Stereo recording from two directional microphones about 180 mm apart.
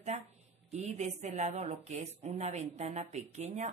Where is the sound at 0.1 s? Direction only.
40° right (ahead or behind).